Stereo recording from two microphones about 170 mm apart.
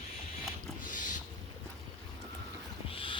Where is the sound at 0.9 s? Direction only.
50° left (ahead or behind).